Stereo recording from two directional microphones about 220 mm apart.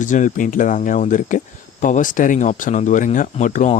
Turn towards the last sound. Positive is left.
turn(degrees=35)  # may be behind; listen again after turning